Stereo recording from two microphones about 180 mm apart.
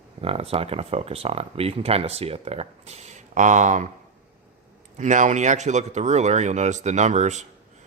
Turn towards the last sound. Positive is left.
turn(degrees=-40)  # may be behind; listen again after turning